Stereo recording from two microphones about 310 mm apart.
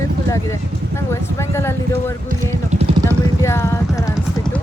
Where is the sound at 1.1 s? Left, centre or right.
Centre.